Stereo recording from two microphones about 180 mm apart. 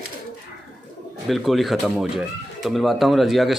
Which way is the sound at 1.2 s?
Centre (ahead or behind).